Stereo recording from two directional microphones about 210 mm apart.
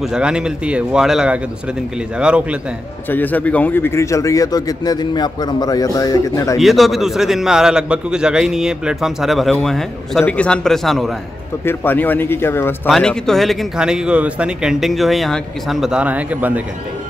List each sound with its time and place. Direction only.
0.0 s a man's voice: 5° right (ahead or behind)
3.1 s speech: 10° left (ahead or behind)
6.6 s a man's voice: centre (ahead or behind)